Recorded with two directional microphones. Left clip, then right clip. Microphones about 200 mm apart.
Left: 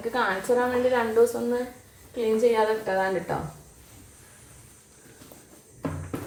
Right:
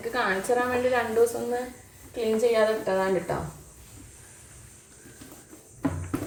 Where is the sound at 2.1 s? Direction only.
10° left (ahead or behind).